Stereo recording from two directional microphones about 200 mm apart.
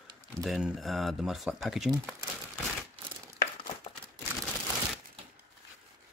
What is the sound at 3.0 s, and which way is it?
Crumpling, 25° right (ahead or behind).